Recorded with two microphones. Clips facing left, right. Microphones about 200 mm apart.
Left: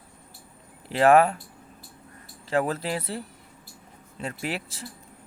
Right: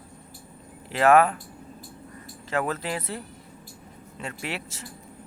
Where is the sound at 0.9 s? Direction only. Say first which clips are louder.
Left 1 dB; 35° left (ahead or behind).